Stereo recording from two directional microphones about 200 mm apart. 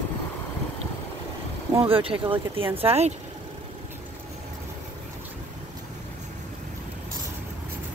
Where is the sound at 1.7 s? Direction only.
25° right (ahead or behind).